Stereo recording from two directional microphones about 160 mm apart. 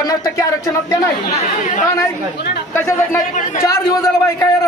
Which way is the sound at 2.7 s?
15° left (ahead or behind).